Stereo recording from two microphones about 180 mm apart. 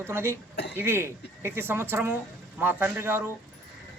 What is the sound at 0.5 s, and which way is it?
Throat clearing, 70° left (ahead or behind).